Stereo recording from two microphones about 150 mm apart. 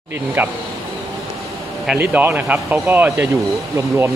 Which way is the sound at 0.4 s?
10° right (ahead or behind).